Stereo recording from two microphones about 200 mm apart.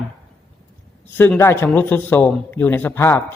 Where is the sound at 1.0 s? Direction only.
10° left (ahead or behind).